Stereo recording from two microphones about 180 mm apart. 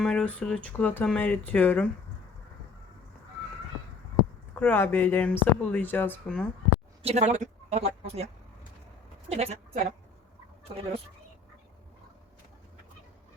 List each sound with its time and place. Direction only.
0.0 s speech: 5° left (ahead or behind)
4.5 s speech: 10° left (ahead or behind)
7.0 s speech: 35° right (ahead or behind)
9.3 s a woman's voice: 35° right (ahead or behind)